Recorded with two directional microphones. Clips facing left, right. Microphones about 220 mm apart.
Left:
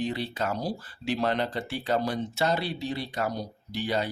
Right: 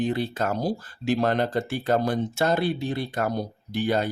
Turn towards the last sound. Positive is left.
turn(degrees=-50)  # may be behind; listen again after turning